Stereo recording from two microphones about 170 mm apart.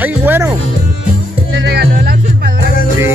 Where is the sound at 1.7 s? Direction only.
75° right (ahead or behind).